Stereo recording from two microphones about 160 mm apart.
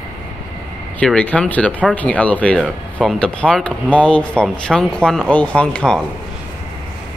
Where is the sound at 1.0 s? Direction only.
10° left (ahead or behind).